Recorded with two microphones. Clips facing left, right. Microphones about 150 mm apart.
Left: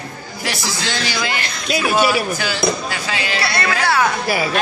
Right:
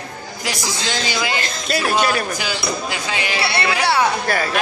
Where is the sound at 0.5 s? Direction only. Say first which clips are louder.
Even; 20° right (ahead or behind).